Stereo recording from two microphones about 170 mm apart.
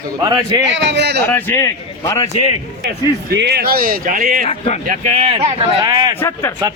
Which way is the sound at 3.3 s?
75° right (ahead or behind).